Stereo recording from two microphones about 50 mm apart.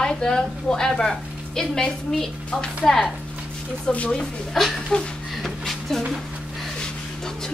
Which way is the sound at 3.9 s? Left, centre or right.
Left.